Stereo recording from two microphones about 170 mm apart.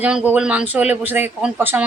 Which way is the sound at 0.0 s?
5° right (ahead or behind).